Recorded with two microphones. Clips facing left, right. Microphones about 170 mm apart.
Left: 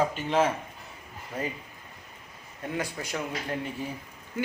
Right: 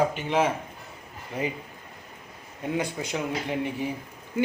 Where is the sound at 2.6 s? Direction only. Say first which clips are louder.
Right 4 dB; 20° right (ahead or behind).